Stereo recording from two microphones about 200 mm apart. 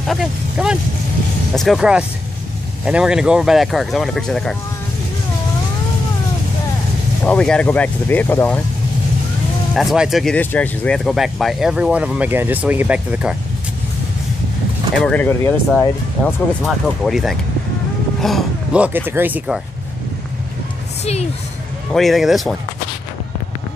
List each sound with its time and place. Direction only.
0.0 s speech: centre (ahead or behind)
7.2 s speech: 5° left (ahead or behind)
9.8 s speech: centre (ahead or behind)
15.0 s speech: 5° left (ahead or behind)
16.6 s speech: centre (ahead or behind)
21.0 s speech: 30° left (ahead or behind)
21.9 s speech: centre (ahead or behind)